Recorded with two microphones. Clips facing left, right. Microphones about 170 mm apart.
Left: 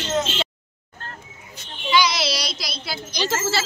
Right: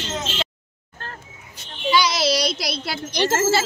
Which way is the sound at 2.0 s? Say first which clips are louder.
Right 4 dB; 45° right (ahead or behind).